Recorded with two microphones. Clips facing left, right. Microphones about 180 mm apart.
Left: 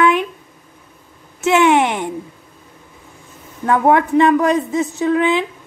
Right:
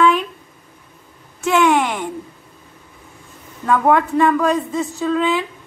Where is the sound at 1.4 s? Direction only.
20° left (ahead or behind).